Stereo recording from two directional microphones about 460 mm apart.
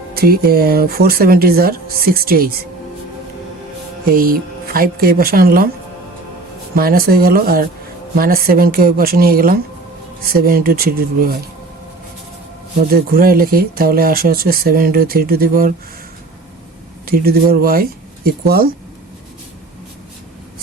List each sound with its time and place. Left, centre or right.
0.1 s speech: centre
4.1 s speech: centre
6.7 s speech: centre
12.9 s speech: centre
17.1 s speech: centre